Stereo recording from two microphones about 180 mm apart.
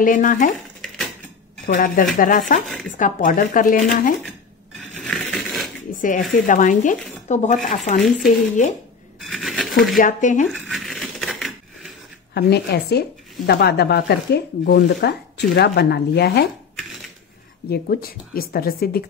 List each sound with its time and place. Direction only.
0.0 s speech: 45° left (ahead or behind)
1.7 s speech: 45° left (ahead or behind)
4.7 s coin: centre (ahead or behind)
5.9 s a sound: 45° left (ahead or behind)
6.4 s speech: 45° left (ahead or behind)
9.2 s a sound: centre (ahead or behind)
9.9 s speech: 45° left (ahead or behind)
10.5 s coin: centre (ahead or behind)
12.4 s speech: 65° left (ahead or behind)
17.6 s speech: 55° left (ahead or behind)